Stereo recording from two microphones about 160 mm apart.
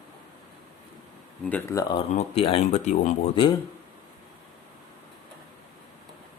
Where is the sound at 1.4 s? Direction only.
15° left (ahead or behind).